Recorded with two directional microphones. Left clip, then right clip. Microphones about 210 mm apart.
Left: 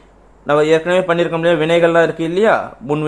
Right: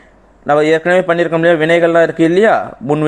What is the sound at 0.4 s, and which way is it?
A man's voice, 20° right (ahead or behind).